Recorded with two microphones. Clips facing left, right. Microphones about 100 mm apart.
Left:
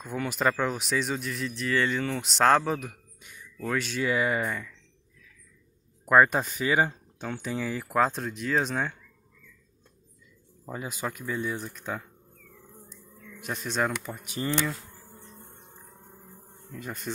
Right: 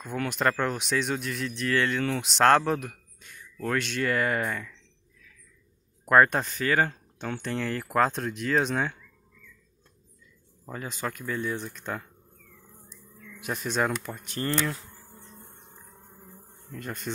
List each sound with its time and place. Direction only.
0.0 s speech: 5° left (ahead or behind)
6.0 s speech: 5° left (ahead or behind)
10.6 s speech: 10° left (ahead or behind)
16.7 s speech: centre (ahead or behind)